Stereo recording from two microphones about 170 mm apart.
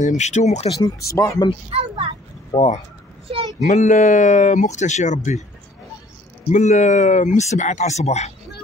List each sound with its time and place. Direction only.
0.2 s speech: 45° left (ahead or behind)
0.7 s speech: 20° left (ahead or behind)
1.7 s a child's voice: 35° right (ahead or behind)
2.5 s speech: 40° left (ahead or behind)
6.5 s speech: 45° left (ahead or behind)